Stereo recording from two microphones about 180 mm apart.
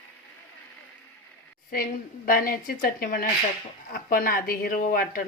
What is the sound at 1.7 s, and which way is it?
A woman's voice, 55° left (ahead or behind).